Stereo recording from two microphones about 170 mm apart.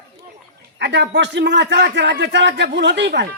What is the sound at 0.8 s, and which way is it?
A man's voice, 90° right.